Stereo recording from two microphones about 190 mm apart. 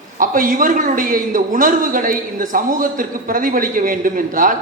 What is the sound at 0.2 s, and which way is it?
A man's voice, 45° right (ahead or behind).